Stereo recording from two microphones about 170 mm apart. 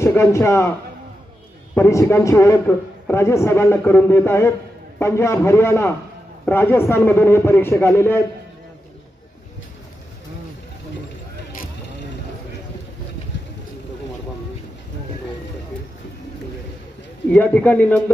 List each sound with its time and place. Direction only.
0.0 s a man's voice: 15° left (ahead or behind)
1.8 s a man's voice: 15° left (ahead or behind)
17.3 s a man's voice: 10° left (ahead or behind)